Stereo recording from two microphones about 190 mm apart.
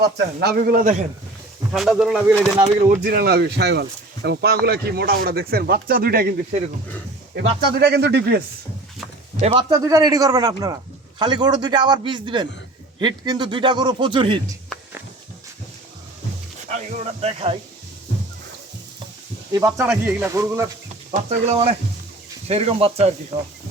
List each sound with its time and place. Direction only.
0.0 s a man's voice: 60° right (ahead or behind)
1.7 s speech: centre (ahead or behind)
2.9 s speech: 50° right (ahead or behind)
7.8 s speech: 60° right (ahead or behind)
9.4 s speech: 35° right (ahead or behind)
9.6 s speech: 20° right (ahead or behind)
14.7 s a sound: centre (ahead or behind)
16.6 s speech: 40° right (ahead or behind)
19.5 s speech: 15° right (ahead or behind)
21.1 s speech: 35° right (ahead or behind)